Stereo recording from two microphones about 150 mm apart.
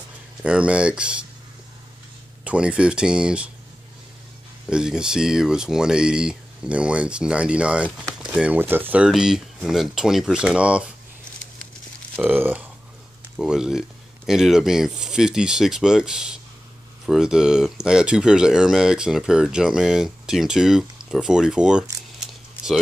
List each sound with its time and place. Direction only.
0.4 s speech: 5° right (ahead or behind)
2.4 s speech: 5° right (ahead or behind)
4.6 s speech: 5° right (ahead or behind)
12.2 s speech: 10° right (ahead or behind)